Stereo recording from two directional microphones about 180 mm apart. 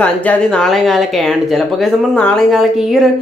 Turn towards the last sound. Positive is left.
turn(degrees=0)  # may be behind; listen again after turning